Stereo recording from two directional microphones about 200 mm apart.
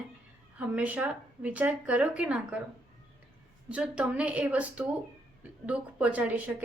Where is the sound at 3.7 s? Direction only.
5° right (ahead or behind).